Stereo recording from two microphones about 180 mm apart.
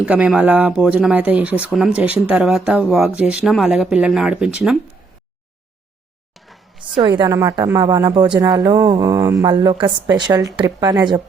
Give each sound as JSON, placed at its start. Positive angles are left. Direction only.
{"t": 0.0, "sound": "speech", "side_deg": -5}
{"t": 7.2, "sound": "speech", "side_deg": -20}